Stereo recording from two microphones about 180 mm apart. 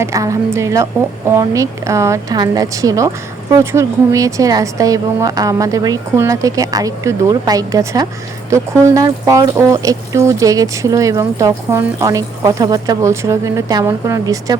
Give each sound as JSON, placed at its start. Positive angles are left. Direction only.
{"t": 0.0, "sound": "speech", "side_deg": -15}